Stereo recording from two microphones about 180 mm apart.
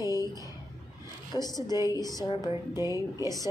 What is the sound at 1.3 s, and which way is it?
Speech, 20° left (ahead or behind).